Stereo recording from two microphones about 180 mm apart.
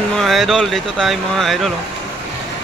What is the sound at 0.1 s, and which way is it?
Speech, centre (ahead or behind).